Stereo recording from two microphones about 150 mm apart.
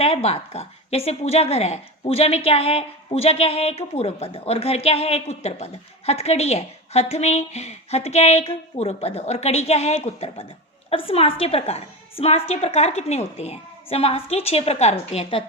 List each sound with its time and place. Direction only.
0.0 s a woman's voice: 40° left (ahead or behind)